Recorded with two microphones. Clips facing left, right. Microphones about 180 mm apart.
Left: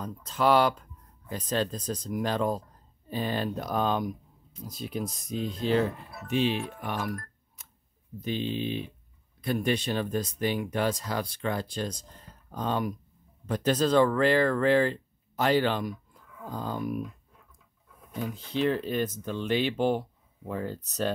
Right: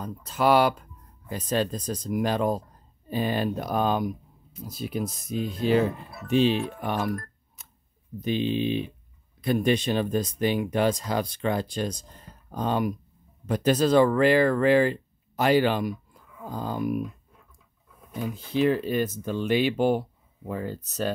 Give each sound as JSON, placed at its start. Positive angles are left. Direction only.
{"t": 0.0, "sound": "speech", "side_deg": -5}
{"t": 6.2, "sound": "speech", "side_deg": -30}
{"t": 18.1, "sound": "speech", "side_deg": -10}